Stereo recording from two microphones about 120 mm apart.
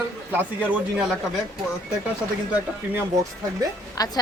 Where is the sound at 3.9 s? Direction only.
35° left (ahead or behind).